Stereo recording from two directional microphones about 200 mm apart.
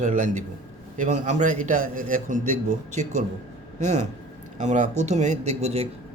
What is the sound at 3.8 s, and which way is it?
A man's voice, 35° right (ahead or behind).